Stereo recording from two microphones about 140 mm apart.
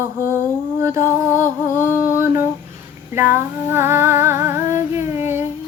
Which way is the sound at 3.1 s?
15° right (ahead or behind).